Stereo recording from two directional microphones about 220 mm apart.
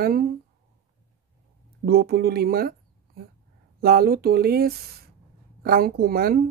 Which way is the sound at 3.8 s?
45° right (ahead or behind).